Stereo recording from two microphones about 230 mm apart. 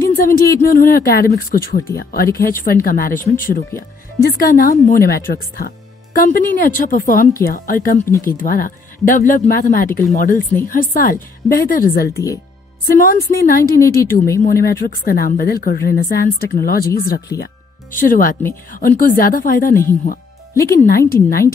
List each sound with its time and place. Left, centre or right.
0.0 s a woman's voice: left
4.2 s a woman's voice: left